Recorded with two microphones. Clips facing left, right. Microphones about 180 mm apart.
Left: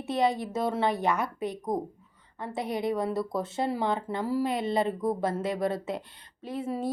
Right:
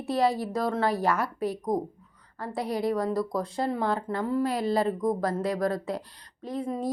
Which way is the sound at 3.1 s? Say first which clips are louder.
Right 2 dB; 5° left (ahead or behind).